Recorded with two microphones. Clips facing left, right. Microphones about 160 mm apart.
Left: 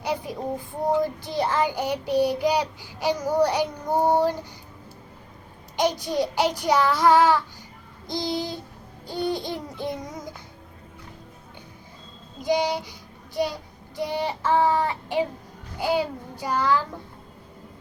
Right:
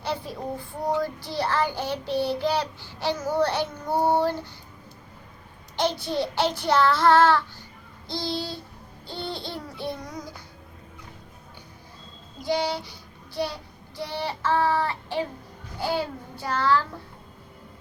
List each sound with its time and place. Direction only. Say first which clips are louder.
0.0 s a child's voice: left 2 dB; 15° left (ahead or behind)
1.0 s child singing: left 2 dB; 20° left (ahead or behind)
5.7 s child singing: left 2 dB; 15° left (ahead or behind)
8.0 s a sound: left 3 dB; 20° left (ahead or behind)
9.0 s child singing: left 7 dB; 15° left (ahead or behind)
12.5 s child singing: left 3 dB; 15° left (ahead or behind)